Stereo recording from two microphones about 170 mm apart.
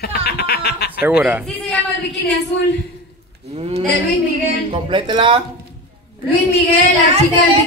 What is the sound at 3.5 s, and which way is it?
Speech, 40° right (ahead or behind).